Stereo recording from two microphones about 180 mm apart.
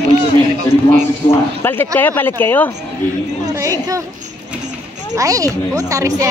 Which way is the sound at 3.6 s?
20° right (ahead or behind).